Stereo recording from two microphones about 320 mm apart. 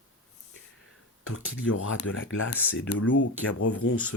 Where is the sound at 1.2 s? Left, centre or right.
Left.